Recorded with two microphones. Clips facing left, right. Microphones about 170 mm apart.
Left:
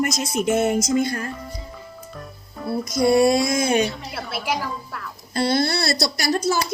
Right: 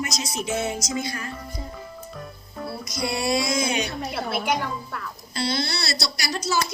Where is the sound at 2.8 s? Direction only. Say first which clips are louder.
Left 12 dB; 50° left (ahead or behind).